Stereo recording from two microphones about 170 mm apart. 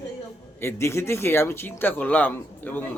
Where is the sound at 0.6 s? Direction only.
15° left (ahead or behind).